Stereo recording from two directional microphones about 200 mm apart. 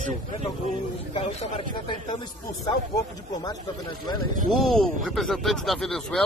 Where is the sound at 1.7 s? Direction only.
25° left (ahead or behind).